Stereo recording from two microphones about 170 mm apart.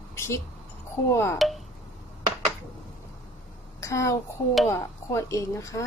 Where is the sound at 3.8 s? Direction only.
20° left (ahead or behind).